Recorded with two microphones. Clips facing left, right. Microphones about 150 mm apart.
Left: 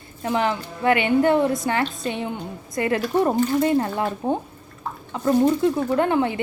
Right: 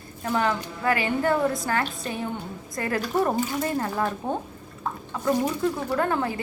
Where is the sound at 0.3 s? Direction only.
20° left (ahead or behind).